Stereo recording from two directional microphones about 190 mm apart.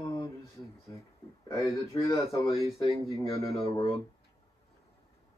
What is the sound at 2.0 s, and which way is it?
Speech, 15° left (ahead or behind).